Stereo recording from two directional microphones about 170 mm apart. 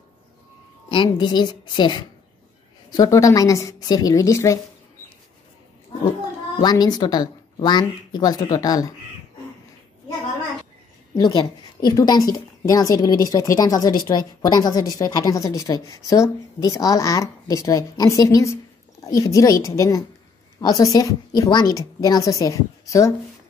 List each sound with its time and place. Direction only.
0.8 s a woman's voice: 30° left (ahead or behind)
6.6 s a woman's voice: 25° left (ahead or behind)
11.1 s a woman's voice: 25° left (ahead or behind)